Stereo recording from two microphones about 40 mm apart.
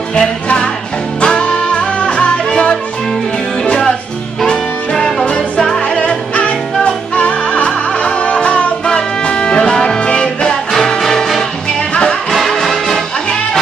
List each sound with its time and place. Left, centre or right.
0.1 s music: left
1.6 s music: left
5.2 s music: centre
5.8 s music: left; by 11.4 s centre
11.9 s music: left
12.3 s music: centre